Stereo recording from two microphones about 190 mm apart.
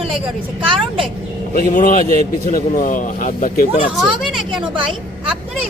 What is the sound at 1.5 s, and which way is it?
Speech, 50° left (ahead or behind).